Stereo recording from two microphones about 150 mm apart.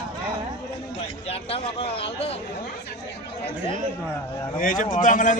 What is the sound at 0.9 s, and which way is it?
Speech, 40° left (ahead or behind).